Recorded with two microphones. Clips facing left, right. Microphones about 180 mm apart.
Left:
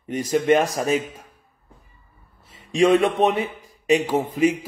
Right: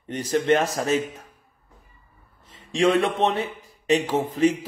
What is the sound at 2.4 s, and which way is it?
A man's voice, 10° left (ahead or behind).